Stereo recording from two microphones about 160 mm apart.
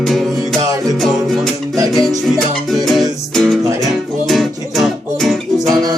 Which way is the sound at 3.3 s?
Centre (ahead or behind).